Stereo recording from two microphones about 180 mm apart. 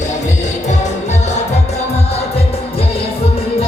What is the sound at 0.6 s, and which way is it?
Music, 40° left (ahead or behind).